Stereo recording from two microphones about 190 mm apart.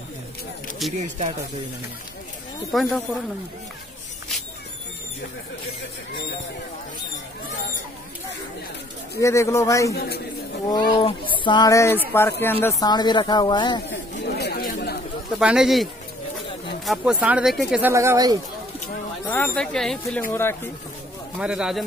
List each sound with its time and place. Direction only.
0.9 s speech: 40° right (ahead or behind)
2.7 s speech: centre (ahead or behind)
9.2 s speech: 15° left (ahead or behind)
9.9 s a man's voice: 55° left (ahead or behind)
10.7 s speech: 25° left (ahead or behind)
14.2 s chatter: 60° left (ahead or behind)
15.3 s speech: 5° right (ahead or behind)
19.2 s speech: 10° left (ahead or behind)
21.4 s speech: 5° right (ahead or behind)